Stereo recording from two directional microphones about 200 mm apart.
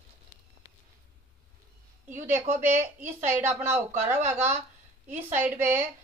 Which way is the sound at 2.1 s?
10° right (ahead or behind).